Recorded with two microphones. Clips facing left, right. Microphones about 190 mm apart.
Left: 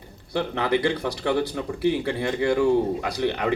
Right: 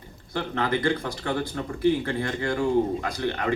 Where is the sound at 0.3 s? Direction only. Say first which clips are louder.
Left 3 dB; 50° right (ahead or behind).